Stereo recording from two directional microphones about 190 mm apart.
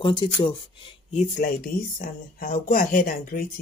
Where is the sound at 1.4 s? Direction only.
45° left (ahead or behind).